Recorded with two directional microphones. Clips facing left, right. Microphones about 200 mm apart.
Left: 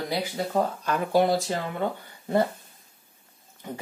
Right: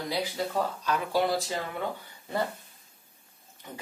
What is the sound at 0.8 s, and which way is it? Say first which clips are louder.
Speech: left 5 dB; 50° left (ahead or behind).